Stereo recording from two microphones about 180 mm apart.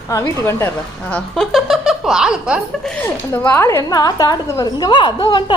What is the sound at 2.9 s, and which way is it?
A woman's voice, 10° left (ahead or behind).